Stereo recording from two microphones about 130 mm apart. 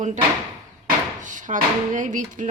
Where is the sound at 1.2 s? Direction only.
75° right (ahead or behind).